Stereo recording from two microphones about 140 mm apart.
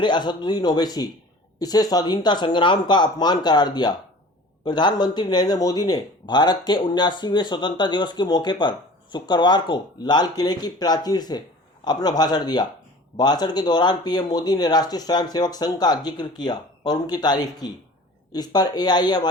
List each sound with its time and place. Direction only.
0.0 s speech: 30° left (ahead or behind)